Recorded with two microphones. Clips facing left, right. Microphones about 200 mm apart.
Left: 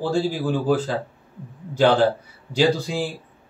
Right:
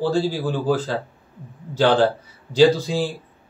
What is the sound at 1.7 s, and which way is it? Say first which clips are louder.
A man's voice: even; 15° left (ahead or behind).